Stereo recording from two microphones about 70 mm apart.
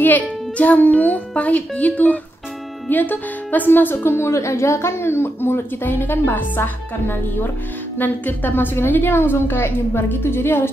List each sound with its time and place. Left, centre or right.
0.0 s a child's voice: left